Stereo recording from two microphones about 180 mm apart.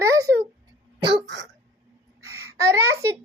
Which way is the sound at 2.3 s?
15° right (ahead or behind).